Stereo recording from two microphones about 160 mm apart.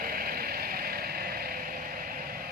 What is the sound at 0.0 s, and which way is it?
Vehicle, 65° right (ahead or behind).